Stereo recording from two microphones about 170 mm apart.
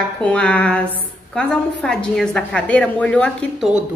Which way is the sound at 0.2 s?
5° left (ahead or behind).